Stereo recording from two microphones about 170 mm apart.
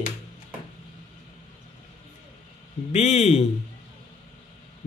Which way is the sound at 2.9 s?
40° left (ahead or behind).